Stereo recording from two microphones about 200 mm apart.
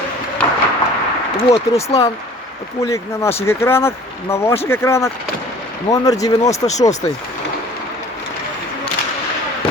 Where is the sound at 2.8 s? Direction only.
15° left (ahead or behind).